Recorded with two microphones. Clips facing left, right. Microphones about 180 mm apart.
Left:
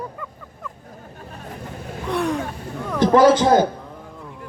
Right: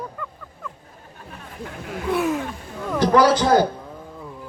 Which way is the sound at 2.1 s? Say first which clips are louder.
Right 1 dB; 5° right (ahead or behind).